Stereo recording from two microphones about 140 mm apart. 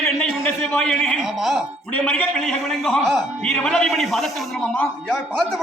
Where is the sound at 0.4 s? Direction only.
10° left (ahead or behind).